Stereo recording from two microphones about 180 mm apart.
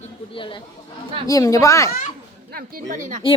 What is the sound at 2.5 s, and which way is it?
Speech, 55° right (ahead or behind).